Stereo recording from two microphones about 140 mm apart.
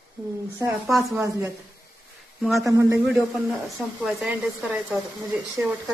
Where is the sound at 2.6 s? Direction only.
25° right (ahead or behind).